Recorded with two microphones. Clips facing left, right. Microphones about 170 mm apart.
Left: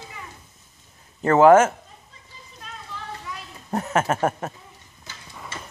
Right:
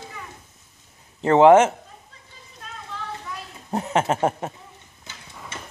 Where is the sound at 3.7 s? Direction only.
20° right (ahead or behind).